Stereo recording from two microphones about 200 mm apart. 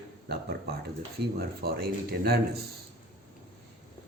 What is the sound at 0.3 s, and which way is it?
A man's voice, 55° right (ahead or behind).